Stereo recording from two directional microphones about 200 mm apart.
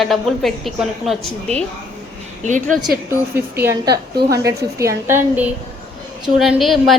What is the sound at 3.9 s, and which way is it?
Speech, 55° right (ahead or behind).